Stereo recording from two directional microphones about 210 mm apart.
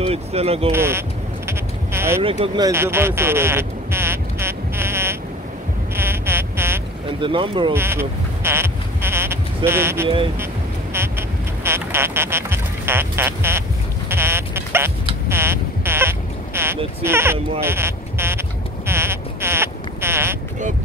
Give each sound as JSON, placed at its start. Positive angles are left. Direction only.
{"t": 0.0, "sound": "speech", "side_deg": -30}
{"t": 0.7, "sound": "speech", "side_deg": -10}
{"t": 1.5, "sound": "quack", "side_deg": -10}
{"t": 2.2, "sound": "a sound", "side_deg": -25}
{"t": 7.1, "sound": "speech", "side_deg": -25}
{"t": 7.7, "sound": "sheep", "side_deg": -10}
{"t": 9.7, "sound": "speech", "side_deg": -10}
{"t": 10.4, "sound": "duck", "side_deg": -10}
{"t": 15.2, "sound": "a sound", "side_deg": -10}